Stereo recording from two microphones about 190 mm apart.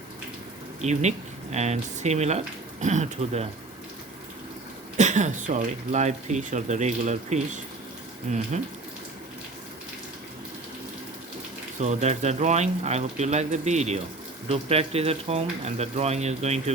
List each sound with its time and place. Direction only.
0.8 s speech: 35° right (ahead or behind)
4.9 s speech: 40° right (ahead or behind)
11.8 s speech: 35° right (ahead or behind)